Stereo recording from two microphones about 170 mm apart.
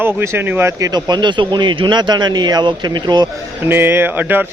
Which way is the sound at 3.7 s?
15° right (ahead or behind).